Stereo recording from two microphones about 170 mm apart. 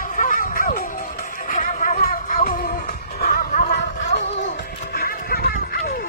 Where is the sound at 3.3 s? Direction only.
50° left (ahead or behind).